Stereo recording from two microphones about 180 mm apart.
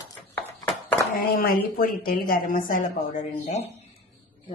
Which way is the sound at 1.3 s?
55° left (ahead or behind).